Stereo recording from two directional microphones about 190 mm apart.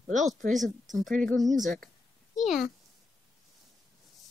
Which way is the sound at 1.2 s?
Centre (ahead or behind).